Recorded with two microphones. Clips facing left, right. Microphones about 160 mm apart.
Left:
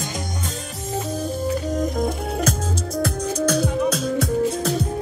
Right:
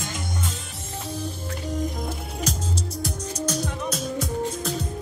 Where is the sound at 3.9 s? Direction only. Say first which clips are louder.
Left 6 dB; 75° left (ahead or behind).